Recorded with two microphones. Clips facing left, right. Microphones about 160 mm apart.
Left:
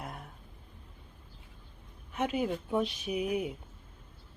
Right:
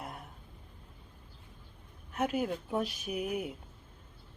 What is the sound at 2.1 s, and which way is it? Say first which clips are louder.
Speech: left 1 dB; centre (ahead or behind).